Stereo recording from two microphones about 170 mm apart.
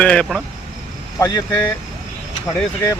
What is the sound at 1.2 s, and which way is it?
Speech, 20° left (ahead or behind).